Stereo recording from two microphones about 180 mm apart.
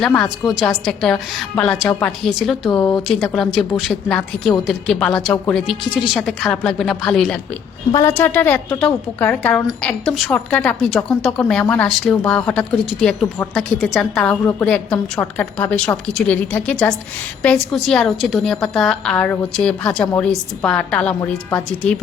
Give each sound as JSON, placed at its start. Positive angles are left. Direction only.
{"t": 0.0, "sound": "a woman's voice", "side_deg": 0}